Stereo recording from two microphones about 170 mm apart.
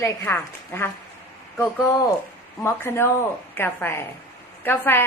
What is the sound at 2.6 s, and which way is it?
A woman's voice, 15° left (ahead or behind).